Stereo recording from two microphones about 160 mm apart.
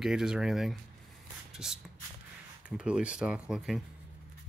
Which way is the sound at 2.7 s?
5° right (ahead or behind).